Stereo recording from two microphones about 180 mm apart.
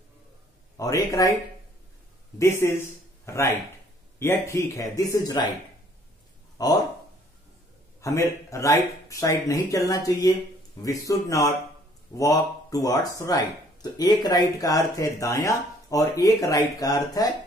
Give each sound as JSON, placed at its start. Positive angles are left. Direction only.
{"t": 0.7, "sound": "speech", "side_deg": 20}
{"t": 2.3, "sound": "speech", "side_deg": 15}
{"t": 6.6, "sound": "speech", "side_deg": 20}
{"t": 8.0, "sound": "speech", "side_deg": 15}